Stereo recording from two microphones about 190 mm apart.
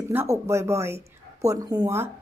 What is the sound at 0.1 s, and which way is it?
A woman's voice, 15° right (ahead or behind).